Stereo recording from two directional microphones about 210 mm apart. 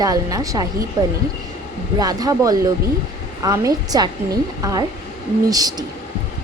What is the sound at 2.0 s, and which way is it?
A woman's voice, 15° right (ahead or behind).